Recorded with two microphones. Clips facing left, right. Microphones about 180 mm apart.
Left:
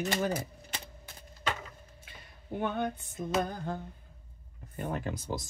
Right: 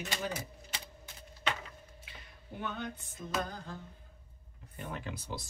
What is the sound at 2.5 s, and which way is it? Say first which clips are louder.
Speech: left 8 dB; 55° left (ahead or behind).